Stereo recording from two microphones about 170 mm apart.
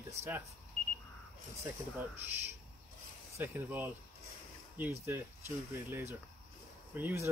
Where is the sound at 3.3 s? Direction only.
15° right (ahead or behind).